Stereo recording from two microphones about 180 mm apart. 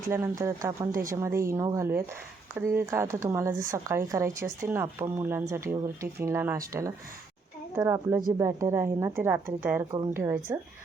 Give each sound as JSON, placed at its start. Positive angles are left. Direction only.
{"t": 0.4, "sound": "speech", "side_deg": -15}
{"t": 7.8, "sound": "speech", "side_deg": -15}